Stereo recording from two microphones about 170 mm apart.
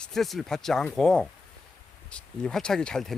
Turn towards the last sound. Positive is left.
turn(degrees=5)  # may be behind; listen again after turning